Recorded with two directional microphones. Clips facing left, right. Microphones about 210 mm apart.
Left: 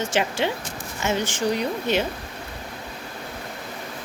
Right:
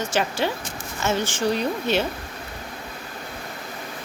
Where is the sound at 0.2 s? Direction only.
20° left (ahead or behind).